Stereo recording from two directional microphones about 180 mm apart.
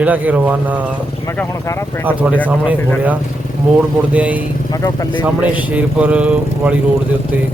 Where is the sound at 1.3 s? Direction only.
15° left (ahead or behind).